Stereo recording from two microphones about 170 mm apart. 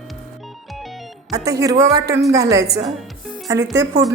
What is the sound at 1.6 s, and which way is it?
A woman's voice, 20° right (ahead or behind).